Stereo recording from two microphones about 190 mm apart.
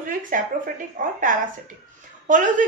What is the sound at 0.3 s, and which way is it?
Speech, 45° right (ahead or behind).